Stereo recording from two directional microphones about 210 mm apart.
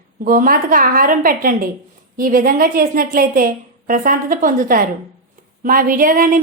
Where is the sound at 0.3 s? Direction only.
40° right (ahead or behind).